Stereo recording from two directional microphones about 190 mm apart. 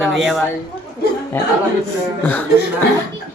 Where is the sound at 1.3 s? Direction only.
10° left (ahead or behind).